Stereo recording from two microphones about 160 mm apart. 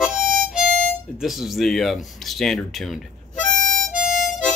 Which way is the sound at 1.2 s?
Centre (ahead or behind).